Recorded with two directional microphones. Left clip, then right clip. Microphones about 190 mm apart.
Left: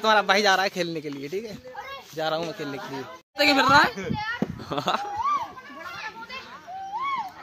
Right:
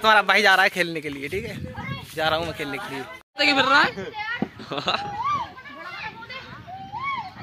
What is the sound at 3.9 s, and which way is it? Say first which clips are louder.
Speech: even; 45° right (ahead or behind).